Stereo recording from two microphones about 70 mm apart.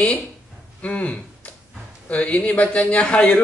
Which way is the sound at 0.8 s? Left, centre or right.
Left.